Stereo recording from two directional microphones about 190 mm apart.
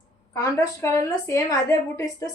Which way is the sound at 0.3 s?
15° left (ahead or behind).